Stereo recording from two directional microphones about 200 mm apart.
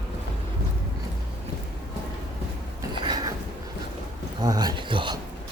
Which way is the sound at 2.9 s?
20° right (ahead or behind).